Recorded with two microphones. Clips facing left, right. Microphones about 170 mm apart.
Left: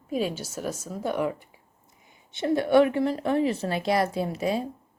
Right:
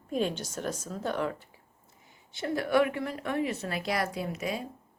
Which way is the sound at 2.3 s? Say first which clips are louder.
Left 6 dB; 25° left (ahead or behind).